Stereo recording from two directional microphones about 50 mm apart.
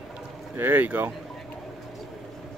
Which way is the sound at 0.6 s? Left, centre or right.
Right.